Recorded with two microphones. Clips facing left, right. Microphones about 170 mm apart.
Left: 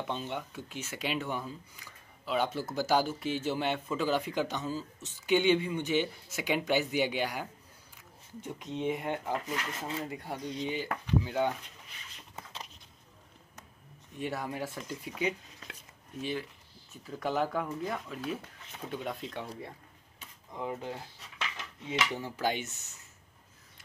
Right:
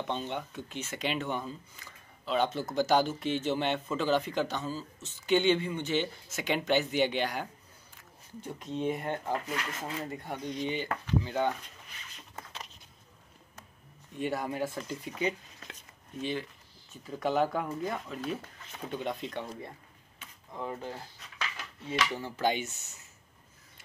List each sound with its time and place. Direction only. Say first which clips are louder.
0.0 s speech: right 2 dB; 5° left (ahead or behind)
8.5 s speech: right 1 dB; 15° left (ahead or behind)
14.1 s speech: right 3 dB; centre (ahead or behind)
20.5 s speech: left 1 dB; 10° left (ahead or behind)
21.4 s dishes: even; 20° left (ahead or behind)
22.4 s speech: right 3 dB; centre (ahead or behind)